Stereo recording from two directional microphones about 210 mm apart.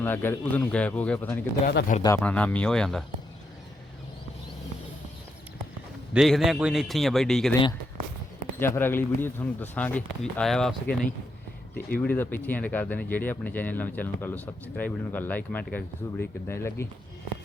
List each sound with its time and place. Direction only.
0.0 s speech: 10° left (ahead or behind)
1.6 s speech: 45° left (ahead or behind)
2.1 s a man's voice: 5° left (ahead or behind)
6.1 s a man's voice: centre (ahead or behind)
8.5 s speech: 10° left (ahead or behind)
11.9 s speech: 10° left (ahead or behind)